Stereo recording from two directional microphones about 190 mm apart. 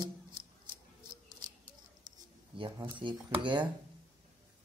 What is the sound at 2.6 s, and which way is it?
Speech, 25° right (ahead or behind).